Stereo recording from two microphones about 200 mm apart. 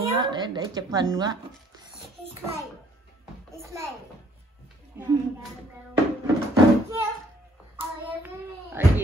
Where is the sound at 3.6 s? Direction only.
15° right (ahead or behind).